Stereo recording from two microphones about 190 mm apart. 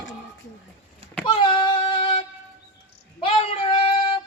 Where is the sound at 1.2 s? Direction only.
25° left (ahead or behind).